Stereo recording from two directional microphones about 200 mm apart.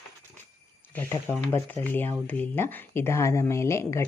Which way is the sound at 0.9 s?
10° left (ahead or behind).